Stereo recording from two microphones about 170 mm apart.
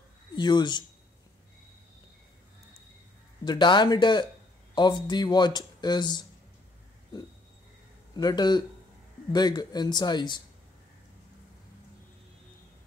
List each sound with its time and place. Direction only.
0.4 s speech: 25° left (ahead or behind)
3.4 s speech: 25° left (ahead or behind)
8.1 s speech: 25° left (ahead or behind)